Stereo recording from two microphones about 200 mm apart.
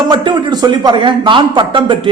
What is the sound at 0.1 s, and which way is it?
Speech, 25° right (ahead or behind).